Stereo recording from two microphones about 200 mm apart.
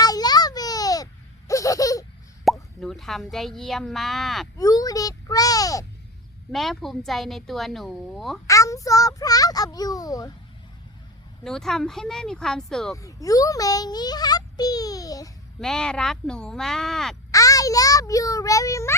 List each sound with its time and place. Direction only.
0.0 s a sound: 20° left (ahead or behind)
1.5 s laughter: 15° left (ahead or behind)
2.4 s plop: centre (ahead or behind)
3.3 s a woman's voice: centre (ahead or behind)
4.5 s a child's voice: 20° left (ahead or behind)
6.5 s a woman's voice: centre (ahead or behind)
8.4 s a child's voice: 15° left (ahead or behind)
11.4 s a woman's voice: centre (ahead or behind)
13.0 s a child's voice: 15° left (ahead or behind)
15.6 s a woman's voice: 5° left (ahead or behind)
17.3 s a child's voice: 15° left (ahead or behind)